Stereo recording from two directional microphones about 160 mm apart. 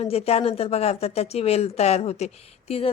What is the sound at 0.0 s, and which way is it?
Speech, 40° left (ahead or behind).